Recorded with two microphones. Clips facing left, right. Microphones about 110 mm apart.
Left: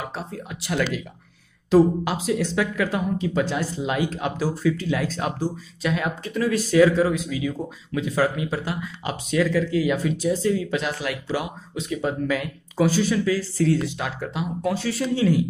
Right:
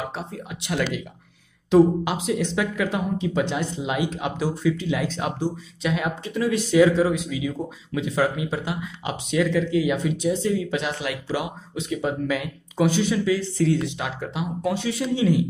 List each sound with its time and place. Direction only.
0.1 s speech: 20° right (ahead or behind)